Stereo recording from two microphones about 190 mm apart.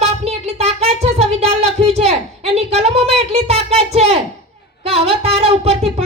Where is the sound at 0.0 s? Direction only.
35° right (ahead or behind).